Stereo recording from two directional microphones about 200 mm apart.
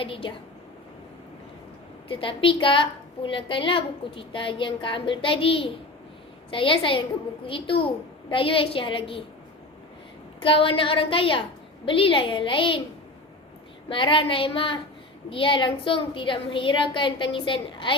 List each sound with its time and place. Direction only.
0.0 s a woman's voice: 25° left (ahead or behind)
2.0 s a woman's voice: 25° left (ahead or behind)
10.4 s a woman's voice: 25° left (ahead or behind)
13.9 s a woman's voice: 25° left (ahead or behind)